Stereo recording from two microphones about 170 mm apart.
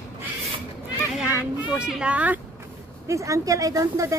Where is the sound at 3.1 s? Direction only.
20° right (ahead or behind).